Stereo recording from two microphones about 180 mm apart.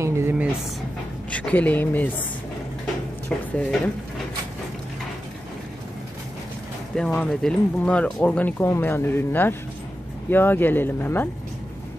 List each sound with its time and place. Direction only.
0.0 s a sound: 10° right (ahead or behind)
1.3 s a woman's voice: 5° left (ahead or behind)
3.3 s speech: 10° left (ahead or behind)
7.0 s speech: 5° left (ahead or behind)